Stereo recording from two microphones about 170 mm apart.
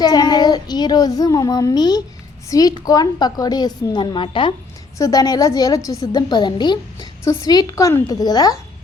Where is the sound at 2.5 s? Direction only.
20° left (ahead or behind).